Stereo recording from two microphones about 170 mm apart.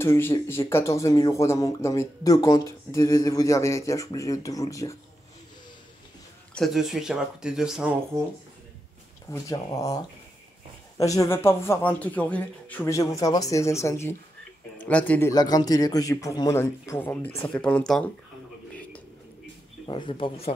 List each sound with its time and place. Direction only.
0.0 s speech: 15° left (ahead or behind)
6.5 s speech: centre (ahead or behind)
9.3 s speech: 20° left (ahead or behind)
19.9 s speech: 30° left (ahead or behind)